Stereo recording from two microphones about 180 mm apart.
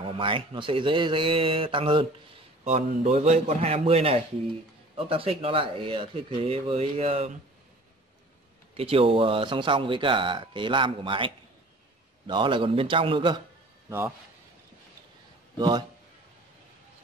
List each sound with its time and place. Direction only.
0.2 s speech: 30° right (ahead or behind)
2.6 s speech: 40° right (ahead or behind)
8.7 s speech: 30° right (ahead or behind)
13.8 s a man's voice: 15° right (ahead or behind)
15.5 s a man's voice: 25° right (ahead or behind)